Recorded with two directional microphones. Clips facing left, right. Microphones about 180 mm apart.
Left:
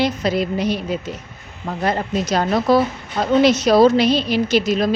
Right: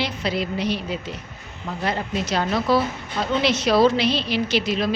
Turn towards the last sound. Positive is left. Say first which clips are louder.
# left 5 dB
turn(degrees=45)  # may be behind; listen again after turning